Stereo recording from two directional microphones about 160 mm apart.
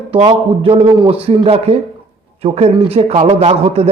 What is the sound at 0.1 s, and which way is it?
A man's voice, 35° right (ahead or behind).